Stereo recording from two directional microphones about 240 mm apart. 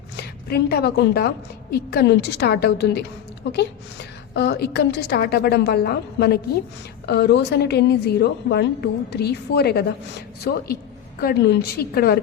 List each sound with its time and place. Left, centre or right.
0.2 s a woman's voice: left